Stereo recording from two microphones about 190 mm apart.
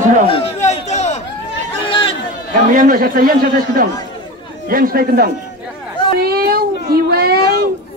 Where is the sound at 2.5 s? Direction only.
45° right (ahead or behind).